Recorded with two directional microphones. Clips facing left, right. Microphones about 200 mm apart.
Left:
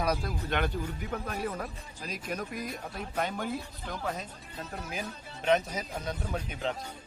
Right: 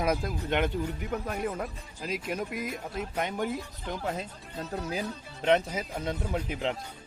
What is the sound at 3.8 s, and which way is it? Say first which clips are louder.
Speech: right 4 dB; 25° right (ahead or behind).